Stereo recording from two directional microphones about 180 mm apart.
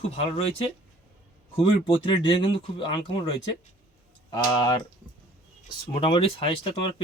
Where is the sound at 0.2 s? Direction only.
35° left (ahead or behind).